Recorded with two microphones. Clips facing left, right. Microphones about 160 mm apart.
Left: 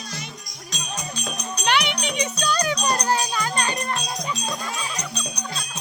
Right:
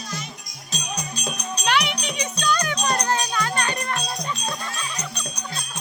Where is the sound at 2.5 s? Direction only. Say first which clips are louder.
Left 1 dB; 10° left (ahead or behind).